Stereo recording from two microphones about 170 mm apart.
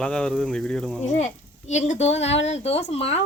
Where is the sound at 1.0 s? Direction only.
45° left (ahead or behind).